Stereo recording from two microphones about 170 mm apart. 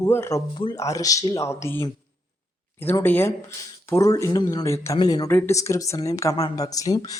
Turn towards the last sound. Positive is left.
turn(degrees=20)  # may be behind; listen again after turning